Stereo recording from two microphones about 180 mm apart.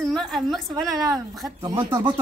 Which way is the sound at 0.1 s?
Centre (ahead or behind).